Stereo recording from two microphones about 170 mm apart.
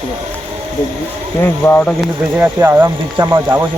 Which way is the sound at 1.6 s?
10° left (ahead or behind).